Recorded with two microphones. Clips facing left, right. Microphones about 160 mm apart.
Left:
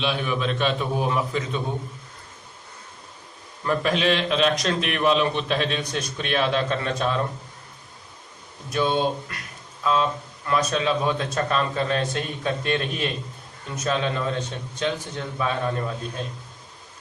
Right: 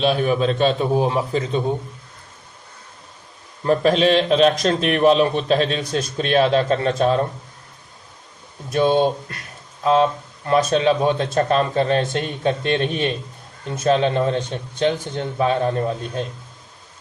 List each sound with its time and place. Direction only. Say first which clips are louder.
0.0 s a man's voice: right 7 dB; 40° right (ahead or behind)
3.6 s a man's voice: right 6 dB; 35° right (ahead or behind)
8.7 s a man's voice: right 6 dB; 35° right (ahead or behind)